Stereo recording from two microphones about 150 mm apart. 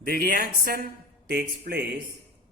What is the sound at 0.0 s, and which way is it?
Speech, 75° right (ahead or behind).